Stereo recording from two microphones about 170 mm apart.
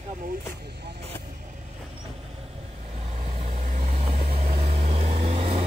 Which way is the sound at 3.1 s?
40° right (ahead or behind).